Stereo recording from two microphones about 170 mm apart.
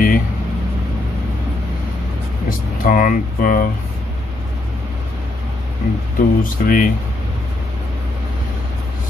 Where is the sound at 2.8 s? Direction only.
55° left (ahead or behind).